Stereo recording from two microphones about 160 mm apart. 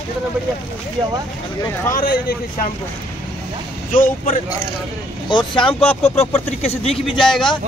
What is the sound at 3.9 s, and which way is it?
Speech, 55° left (ahead or behind).